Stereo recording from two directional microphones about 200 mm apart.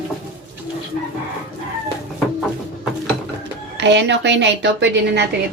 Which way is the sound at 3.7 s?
60° right (ahead or behind).